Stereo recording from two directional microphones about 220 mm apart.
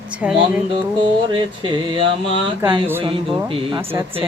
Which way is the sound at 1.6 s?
25° right (ahead or behind).